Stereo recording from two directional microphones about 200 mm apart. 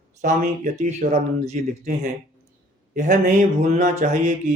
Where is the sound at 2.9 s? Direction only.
40° right (ahead or behind).